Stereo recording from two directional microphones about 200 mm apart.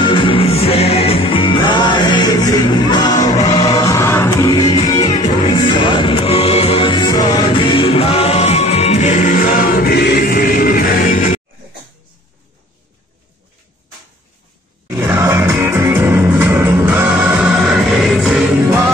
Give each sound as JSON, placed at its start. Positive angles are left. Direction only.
{"t": 0.0, "sound": "music", "side_deg": 25}
{"t": 14.9, "sound": "music", "side_deg": -15}